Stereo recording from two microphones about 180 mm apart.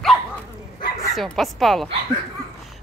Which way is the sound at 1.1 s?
Centre (ahead or behind).